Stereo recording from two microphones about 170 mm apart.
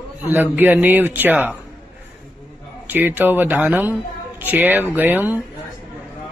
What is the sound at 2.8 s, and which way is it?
Speech, 10° right (ahead or behind).